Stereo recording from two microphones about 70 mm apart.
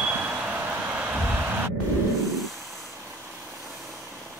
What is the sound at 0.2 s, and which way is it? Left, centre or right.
Vehicle, centre.